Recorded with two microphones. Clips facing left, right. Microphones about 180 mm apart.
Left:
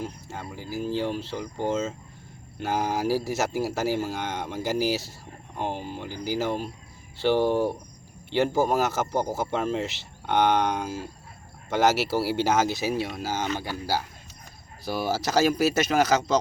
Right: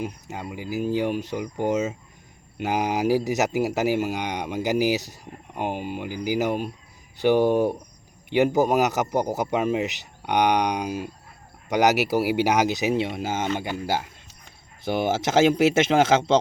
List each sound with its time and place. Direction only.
0.0 s speech: 15° right (ahead or behind)